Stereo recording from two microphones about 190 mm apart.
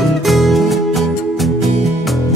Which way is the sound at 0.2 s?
Centre (ahead or behind).